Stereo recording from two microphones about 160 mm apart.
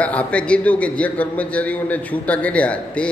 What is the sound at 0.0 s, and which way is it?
A man's voice, 10° left (ahead or behind).